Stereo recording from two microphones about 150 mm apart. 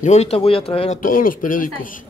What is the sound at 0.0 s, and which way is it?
Speech, 50° left (ahead or behind).